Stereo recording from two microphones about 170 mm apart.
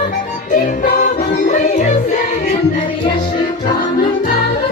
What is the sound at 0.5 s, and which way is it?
Music, 50° left (ahead or behind).